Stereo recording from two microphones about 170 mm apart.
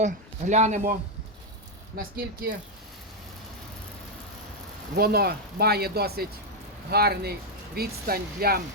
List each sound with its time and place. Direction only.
0.0 s a man's voice: 45° right (ahead or behind)
2.0 s speech: 60° right (ahead or behind)
4.9 s speech: 65° right (ahead or behind)